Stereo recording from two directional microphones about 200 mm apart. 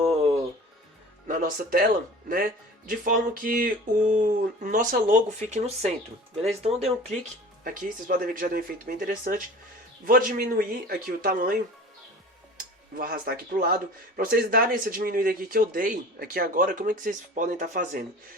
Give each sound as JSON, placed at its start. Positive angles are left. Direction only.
{"t": 0.0, "sound": "music", "side_deg": -30}
{"t": 1.3, "sound": "speech", "side_deg": -45}
{"t": 7.6, "sound": "speech", "side_deg": -45}
{"t": 13.0, "sound": "speech", "side_deg": -50}